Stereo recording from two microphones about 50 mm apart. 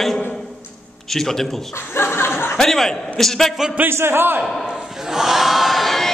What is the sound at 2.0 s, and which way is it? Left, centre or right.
Chuckle, left.